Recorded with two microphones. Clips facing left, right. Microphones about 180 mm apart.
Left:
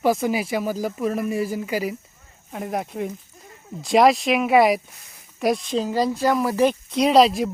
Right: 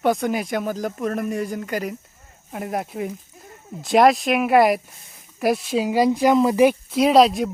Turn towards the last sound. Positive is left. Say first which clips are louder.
# right 1 dB
turn(degrees=0)  # may be behind; listen again after turning